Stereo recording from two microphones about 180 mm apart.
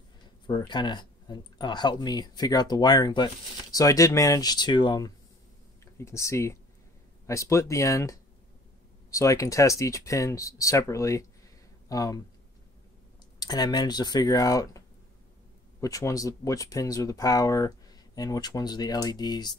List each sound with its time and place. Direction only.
0.5 s speech: 25° left (ahead or behind)
13.4 s speech: 20° left (ahead or behind)
15.8 s speech: 20° left (ahead or behind)